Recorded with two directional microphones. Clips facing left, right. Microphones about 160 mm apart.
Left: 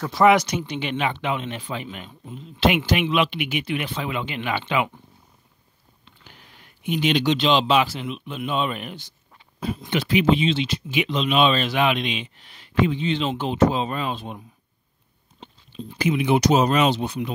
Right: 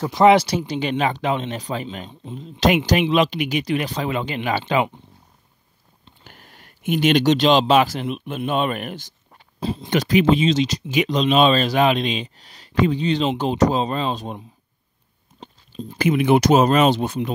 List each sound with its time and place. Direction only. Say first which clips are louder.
0.0 s speech: right 3 dB; 25° right (ahead or behind)
6.2 s speech: right 3 dB; 50° right (ahead or behind)
9.3 s dog: right 2 dB; 30° right (ahead or behind)
9.8 s speech: right 3 dB; 40° right (ahead or behind)
15.4 s speech: right 3 dB; 40° right (ahead or behind)